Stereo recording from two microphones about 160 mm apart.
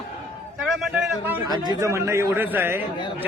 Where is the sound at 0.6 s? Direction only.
Centre (ahead or behind).